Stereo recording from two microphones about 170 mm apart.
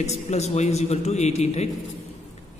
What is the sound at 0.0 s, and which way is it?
A man's voice, 40° left (ahead or behind).